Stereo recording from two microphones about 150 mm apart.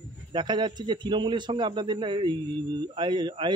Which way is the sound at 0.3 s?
30° right (ahead or behind).